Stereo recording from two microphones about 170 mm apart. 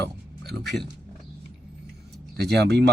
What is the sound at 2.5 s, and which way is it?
Speech, 75° right (ahead or behind).